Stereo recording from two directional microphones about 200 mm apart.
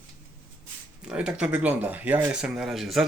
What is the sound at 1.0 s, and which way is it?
Speech, 5° right (ahead or behind).